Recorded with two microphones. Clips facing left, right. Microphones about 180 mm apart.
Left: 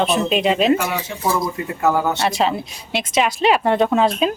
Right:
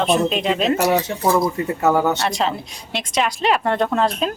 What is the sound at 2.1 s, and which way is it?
Speech, 5° left (ahead or behind).